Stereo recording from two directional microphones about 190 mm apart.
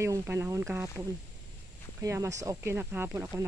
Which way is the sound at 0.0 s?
15° right (ahead or behind).